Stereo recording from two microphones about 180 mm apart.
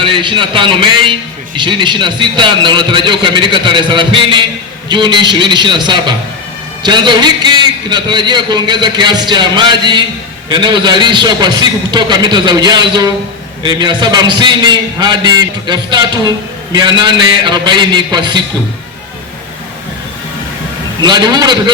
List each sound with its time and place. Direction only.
0.0 s a man's voice: 25° right (ahead or behind)
21.0 s a man's voice: 25° right (ahead or behind)